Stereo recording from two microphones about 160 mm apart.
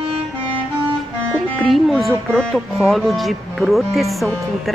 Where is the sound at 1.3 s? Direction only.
Centre (ahead or behind).